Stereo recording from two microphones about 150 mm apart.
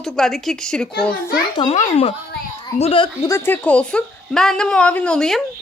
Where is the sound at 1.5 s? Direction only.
30° left (ahead or behind).